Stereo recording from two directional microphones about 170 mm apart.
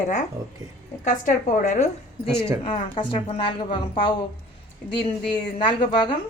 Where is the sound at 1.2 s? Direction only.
45° left (ahead or behind).